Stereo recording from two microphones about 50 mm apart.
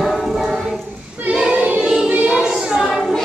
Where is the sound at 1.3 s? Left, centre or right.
Centre.